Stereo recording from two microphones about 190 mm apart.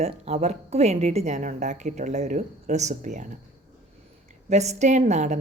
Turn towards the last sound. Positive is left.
turn(degrees=-40)  # may be behind; listen again after turning